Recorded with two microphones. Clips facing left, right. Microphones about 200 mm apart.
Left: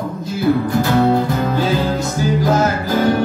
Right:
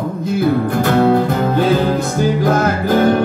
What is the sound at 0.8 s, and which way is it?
Music, 55° right (ahead or behind).